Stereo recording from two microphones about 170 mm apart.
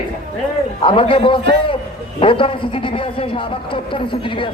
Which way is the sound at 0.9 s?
30° left (ahead or behind).